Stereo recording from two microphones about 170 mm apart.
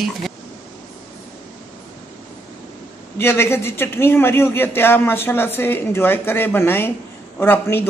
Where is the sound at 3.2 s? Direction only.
15° left (ahead or behind).